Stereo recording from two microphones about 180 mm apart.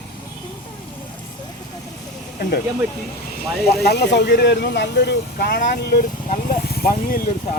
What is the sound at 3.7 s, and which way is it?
Speech, 65° left (ahead or behind).